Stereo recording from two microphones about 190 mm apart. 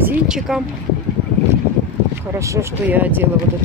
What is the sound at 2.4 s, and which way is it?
Speech, 15° right (ahead or behind).